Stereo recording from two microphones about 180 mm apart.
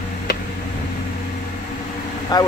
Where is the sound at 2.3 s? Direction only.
20° left (ahead or behind).